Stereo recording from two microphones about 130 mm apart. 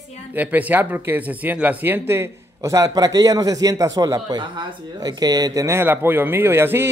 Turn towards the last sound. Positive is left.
turn(degrees=-15)  # may be behind; listen again after turning